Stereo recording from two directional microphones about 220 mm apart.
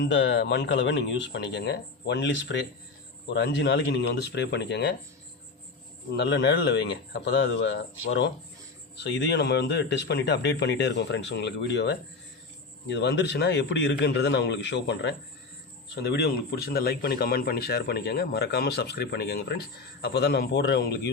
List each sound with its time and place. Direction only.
0.0 s speech: 55° left (ahead or behind)
6.1 s speech: 50° left (ahead or behind)